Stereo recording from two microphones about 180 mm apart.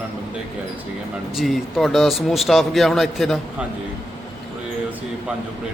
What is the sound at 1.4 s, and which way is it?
Speech, centre (ahead or behind).